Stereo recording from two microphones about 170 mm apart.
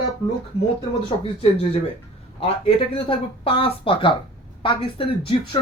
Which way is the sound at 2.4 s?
35° left (ahead or behind).